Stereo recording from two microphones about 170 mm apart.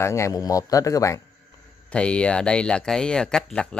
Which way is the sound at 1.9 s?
5° left (ahead or behind).